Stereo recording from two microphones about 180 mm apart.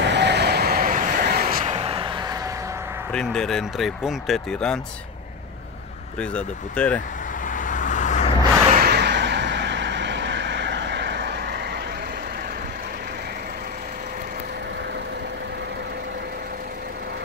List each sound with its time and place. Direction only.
0.0 s vehicle: 70° right (ahead or behind); by 1.7 s 50° right (ahead or behind)
1.7 s a sound: 30° right (ahead or behind)
3.1 s speech: 5° left (ahead or behind)
6.1 s speech: 5° left (ahead or behind)
7.4 s vehicle: 45° left (ahead or behind)
8.7 s vehicle: 65° right (ahead or behind)